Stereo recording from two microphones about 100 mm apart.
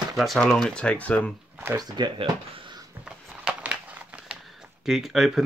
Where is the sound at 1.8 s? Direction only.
45° right (ahead or behind).